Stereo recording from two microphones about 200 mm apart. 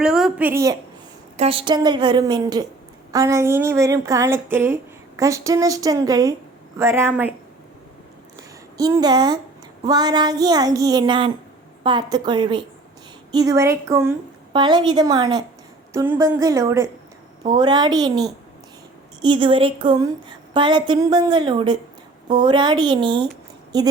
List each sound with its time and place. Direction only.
0.0 s a woman's voice: 5° right (ahead or behind)
1.4 s a woman's voice: 30° right (ahead or behind); by 7.3 s 10° right (ahead or behind)
8.4 s a sound: 20° right (ahead or behind)
9.8 s a woman's voice: 20° right (ahead or behind)